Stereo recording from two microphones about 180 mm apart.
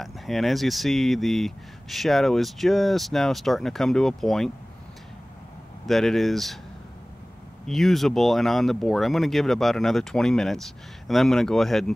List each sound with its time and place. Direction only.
0.0 s speech: centre (ahead or behind)
5.9 s speech: centre (ahead or behind)
7.6 s speech: centre (ahead or behind)